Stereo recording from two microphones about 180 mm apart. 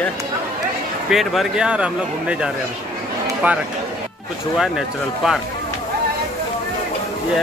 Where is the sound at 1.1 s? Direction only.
Centre (ahead or behind).